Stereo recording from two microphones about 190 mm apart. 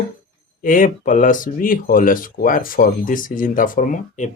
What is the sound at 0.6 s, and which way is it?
Speech, 45° left (ahead or behind).